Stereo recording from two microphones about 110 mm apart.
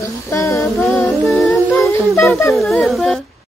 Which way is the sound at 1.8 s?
25° left (ahead or behind).